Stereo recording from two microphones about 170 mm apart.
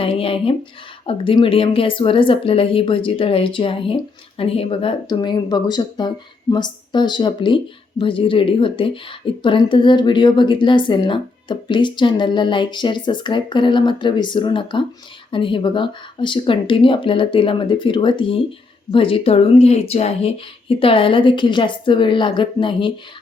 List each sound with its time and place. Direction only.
0.0 s speech: 35° left (ahead or behind)